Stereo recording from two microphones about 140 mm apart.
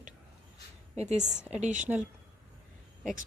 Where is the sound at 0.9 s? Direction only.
55° right (ahead or behind).